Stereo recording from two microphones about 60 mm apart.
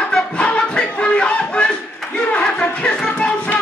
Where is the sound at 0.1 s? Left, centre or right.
Centre.